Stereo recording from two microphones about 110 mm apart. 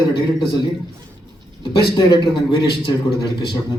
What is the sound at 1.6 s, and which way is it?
A man's voice, 45° left (ahead or behind).